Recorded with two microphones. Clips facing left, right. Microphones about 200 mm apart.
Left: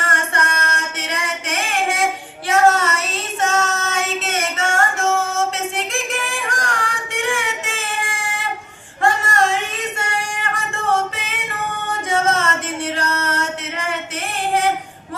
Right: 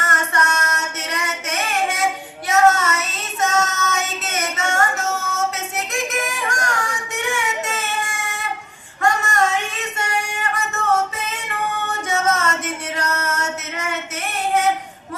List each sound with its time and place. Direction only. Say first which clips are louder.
0.0 s female singing: even; 30° left (ahead or behind)
2.5 s child singing: left 1 dB; 30° left (ahead or behind)
5.0 s music: left 4 dB; 30° left (ahead or behind)
7.1 s a sound: left 2 dB; 30° left (ahead or behind)
9.0 s female singing: left 1 dB; 30° left (ahead or behind)
10.5 s singing: even; 30° left (ahead or behind)
12.1 s a sound: left 2 dB; 30° left (ahead or behind)
12.6 s music: left 2 dB; 30° left (ahead or behind)